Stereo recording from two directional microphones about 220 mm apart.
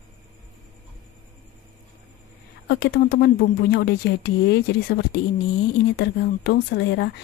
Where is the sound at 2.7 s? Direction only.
45° left (ahead or behind).